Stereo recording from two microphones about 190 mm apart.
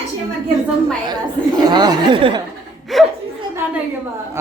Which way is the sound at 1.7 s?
20° right (ahead or behind).